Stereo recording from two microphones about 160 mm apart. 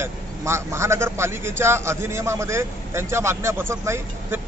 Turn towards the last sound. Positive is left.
turn(degrees=-15)  # may be behind; listen again after turning